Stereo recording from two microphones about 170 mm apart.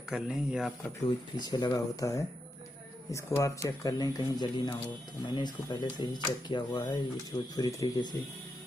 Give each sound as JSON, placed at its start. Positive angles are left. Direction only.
{"t": 0.1, "sound": "speech", "side_deg": -5}
{"t": 1.0, "sound": "a man's voice", "side_deg": 25}